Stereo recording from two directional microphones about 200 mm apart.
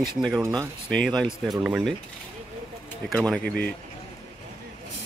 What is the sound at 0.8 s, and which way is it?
Speech, 5° left (ahead or behind).